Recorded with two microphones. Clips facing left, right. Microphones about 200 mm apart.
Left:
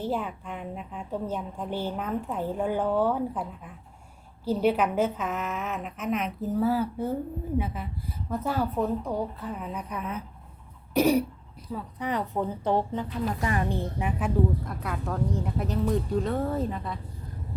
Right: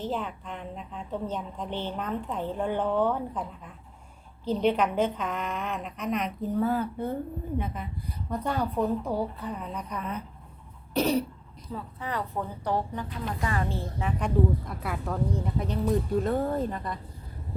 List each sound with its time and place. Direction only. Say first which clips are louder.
0.0 s a woman's voice: left 2 dB; 10° left (ahead or behind)
14.2 s a woman's voice: even; centre (ahead or behind)